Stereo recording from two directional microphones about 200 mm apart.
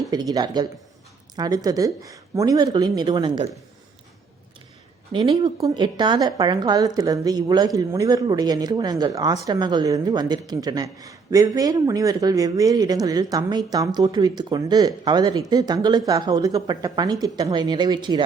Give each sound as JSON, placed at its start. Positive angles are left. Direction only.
{"t": 0.1, "sound": "speech", "side_deg": -20}
{"t": 5.1, "sound": "speech", "side_deg": -25}